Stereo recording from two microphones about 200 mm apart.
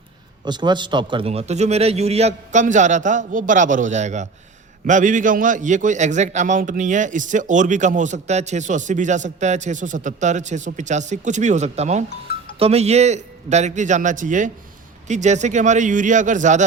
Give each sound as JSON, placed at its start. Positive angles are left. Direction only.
{"t": 0.4, "sound": "a man's voice", "side_deg": -20}